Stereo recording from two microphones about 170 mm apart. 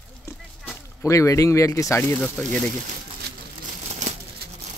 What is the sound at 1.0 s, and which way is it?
Speech, 15° left (ahead or behind).